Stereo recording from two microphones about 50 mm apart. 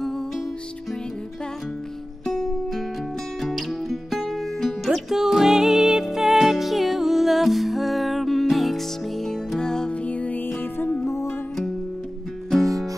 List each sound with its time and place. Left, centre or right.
2.2 s music: centre
10.0 s music: left
10.4 s music: left
11.1 s music: left